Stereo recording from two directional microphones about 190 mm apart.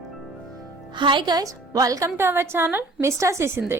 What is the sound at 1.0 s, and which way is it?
A woman's voice, 25° right (ahead or behind).